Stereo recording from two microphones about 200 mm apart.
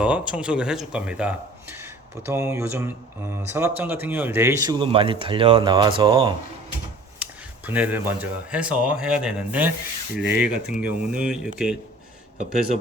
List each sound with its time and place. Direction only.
0.0 s speech: 5° right (ahead or behind); by 6.3 s 25° right (ahead or behind)
7.2 s speech: 10° right (ahead or behind)